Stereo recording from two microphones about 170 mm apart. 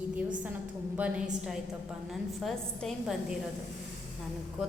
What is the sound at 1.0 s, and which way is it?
Speech, 10° right (ahead or behind).